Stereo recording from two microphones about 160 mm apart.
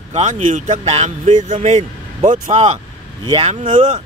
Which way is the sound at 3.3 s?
35° right (ahead or behind).